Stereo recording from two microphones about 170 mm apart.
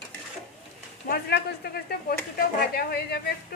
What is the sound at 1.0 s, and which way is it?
Speech, 65° left (ahead or behind).